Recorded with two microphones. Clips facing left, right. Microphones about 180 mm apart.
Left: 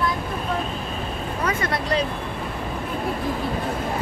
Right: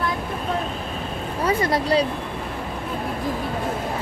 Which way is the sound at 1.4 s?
35° right (ahead or behind).